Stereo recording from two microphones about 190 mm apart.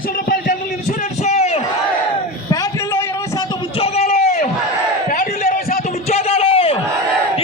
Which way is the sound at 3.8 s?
35° left (ahead or behind).